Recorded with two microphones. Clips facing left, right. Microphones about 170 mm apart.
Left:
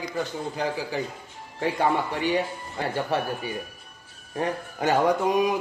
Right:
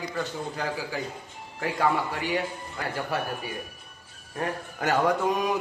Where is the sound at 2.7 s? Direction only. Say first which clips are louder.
Left 4 dB; 25° left (ahead or behind).